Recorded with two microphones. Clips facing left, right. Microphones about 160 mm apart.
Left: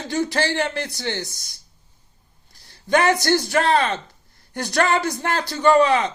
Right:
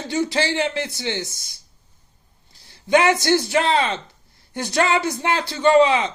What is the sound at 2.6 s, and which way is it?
Speech, 20° right (ahead or behind).